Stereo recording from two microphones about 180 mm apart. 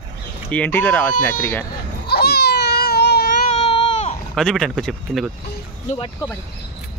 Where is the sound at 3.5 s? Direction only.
30° left (ahead or behind).